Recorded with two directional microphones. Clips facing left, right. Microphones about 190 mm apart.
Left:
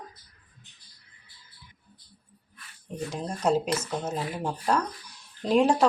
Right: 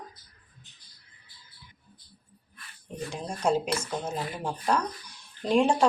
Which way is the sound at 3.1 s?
5° left (ahead or behind).